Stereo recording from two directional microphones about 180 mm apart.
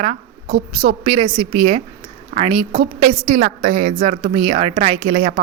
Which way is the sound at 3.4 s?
45° right (ahead or behind).